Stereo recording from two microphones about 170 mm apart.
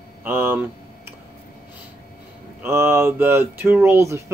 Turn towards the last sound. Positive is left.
turn(degrees=-15)  # may be behind; listen again after turning